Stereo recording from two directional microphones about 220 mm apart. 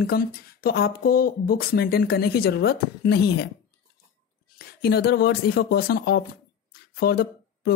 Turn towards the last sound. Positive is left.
turn(degrees=45)  # may be behind; listen again after turning